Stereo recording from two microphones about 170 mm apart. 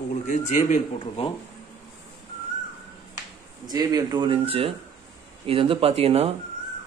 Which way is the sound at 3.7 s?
25° right (ahead or behind).